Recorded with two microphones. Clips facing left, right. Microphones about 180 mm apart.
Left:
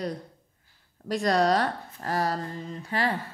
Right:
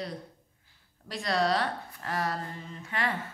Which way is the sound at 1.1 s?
45° left (ahead or behind).